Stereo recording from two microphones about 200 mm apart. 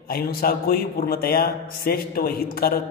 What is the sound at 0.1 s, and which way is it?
A man's voice, 50° left (ahead or behind).